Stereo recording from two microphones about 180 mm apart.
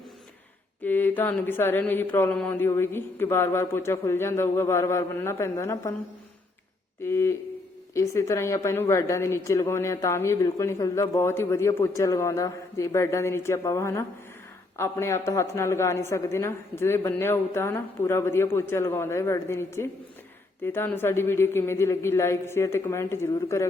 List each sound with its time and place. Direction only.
0.8 s a woman's voice: 10° left (ahead or behind)
7.0 s a woman's voice: 15° left (ahead or behind)